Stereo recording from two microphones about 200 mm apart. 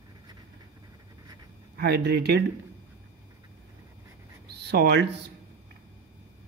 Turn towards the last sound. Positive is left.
turn(degrees=-55)  # may be behind; listen again after turning